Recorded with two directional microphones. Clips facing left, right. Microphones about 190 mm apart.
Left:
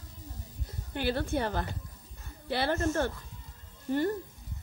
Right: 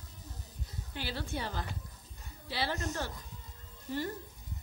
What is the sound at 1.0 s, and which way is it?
A woman's voice, 55° left (ahead or behind).